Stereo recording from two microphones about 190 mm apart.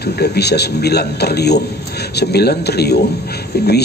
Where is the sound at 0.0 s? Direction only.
60° left (ahead or behind).